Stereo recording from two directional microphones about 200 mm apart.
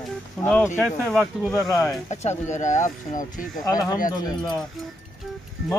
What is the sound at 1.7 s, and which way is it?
Speech, 15° left (ahead or behind).